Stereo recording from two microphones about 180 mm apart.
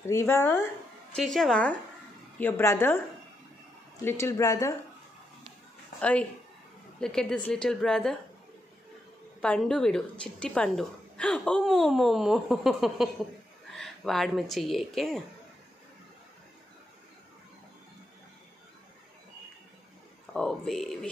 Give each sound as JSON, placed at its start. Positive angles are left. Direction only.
{"t": 0.0, "sound": "speech", "side_deg": 15}
{"t": 1.1, "sound": "a woman's voice", "side_deg": 0}
{"t": 4.0, "sound": "speech", "side_deg": 15}
{"t": 5.9, "sound": "a woman's voice", "side_deg": 5}
{"t": 9.4, "sound": "a woman's voice", "side_deg": 5}
{"t": 20.3, "sound": "a woman's voice", "side_deg": 0}